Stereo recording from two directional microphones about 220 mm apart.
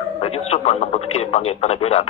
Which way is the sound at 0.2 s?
30° left (ahead or behind).